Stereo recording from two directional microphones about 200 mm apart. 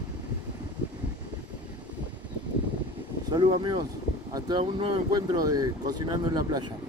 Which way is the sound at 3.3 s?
20° right (ahead or behind).